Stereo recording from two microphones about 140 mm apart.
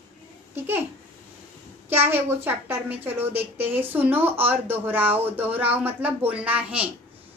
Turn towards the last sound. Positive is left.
turn(degrees=-10)  # may be behind; listen again after turning